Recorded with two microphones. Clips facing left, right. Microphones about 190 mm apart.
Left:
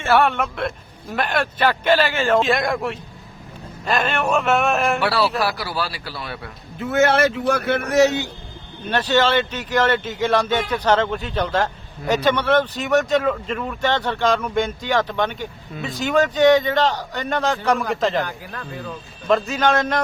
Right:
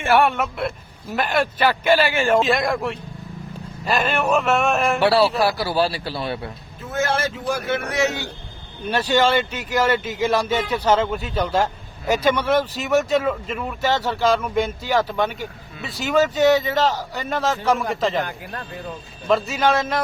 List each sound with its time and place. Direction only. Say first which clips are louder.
0.0 s speech: even; 15° right (ahead or behind)
2.4 s a man's voice: even; centre (ahead or behind)
5.4 s speech: right 4 dB; 25° right (ahead or behind)
6.7 s speech: left 6 dB; 70° left (ahead or behind)
7.9 s a man's voice: left 8 dB; 35° left (ahead or behind)
8.9 s a man's voice: even; 10° right (ahead or behind)
18.2 s speech: left 1 dB; 20° right (ahead or behind)
19.3 s a man's voice: left 1 dB; 5° right (ahead or behind)